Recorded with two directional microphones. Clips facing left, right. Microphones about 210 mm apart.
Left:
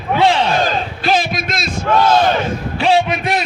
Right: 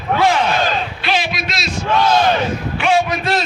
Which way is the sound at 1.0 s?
45° left (ahead or behind).